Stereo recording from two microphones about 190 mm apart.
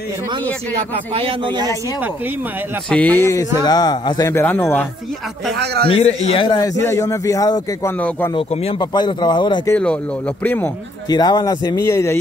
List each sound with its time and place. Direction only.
1.1 s speech: 25° right (ahead or behind)
2.9 s a man's voice: 10° left (ahead or behind)
5.9 s a man's voice: 30° left (ahead or behind)
8.4 s a man's voice: 30° left (ahead or behind)
9.8 s speech: 5° left (ahead or behind)
11.1 s a man's voice: 20° left (ahead or behind)